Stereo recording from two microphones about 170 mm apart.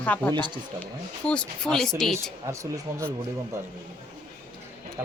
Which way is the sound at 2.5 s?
15° right (ahead or behind).